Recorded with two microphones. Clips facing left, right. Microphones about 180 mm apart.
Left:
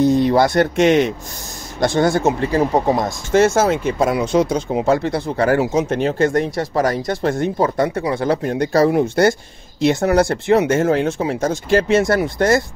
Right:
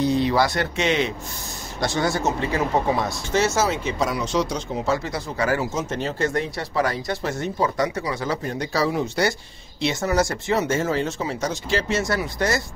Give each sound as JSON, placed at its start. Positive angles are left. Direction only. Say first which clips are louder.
{"t": 0.0, "sound": "speech", "louder": "left 6 dB", "side_deg": 50}
{"t": 2.5, "sound": "speech", "louder": "left 4 dB", "side_deg": 40}